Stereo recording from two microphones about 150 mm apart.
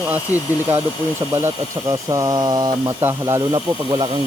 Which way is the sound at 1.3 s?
20° right (ahead or behind).